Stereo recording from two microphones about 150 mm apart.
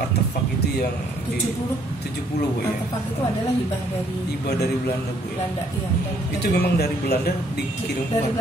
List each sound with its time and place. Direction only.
6.4 s speech: 90° left